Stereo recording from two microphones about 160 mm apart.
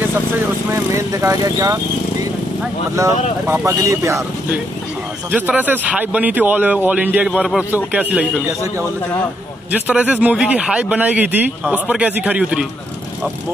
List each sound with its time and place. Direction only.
0.7 s speech: 20° right (ahead or behind)
3.0 s speech: 20° right (ahead or behind)
9.7 s speech: 10° right (ahead or behind)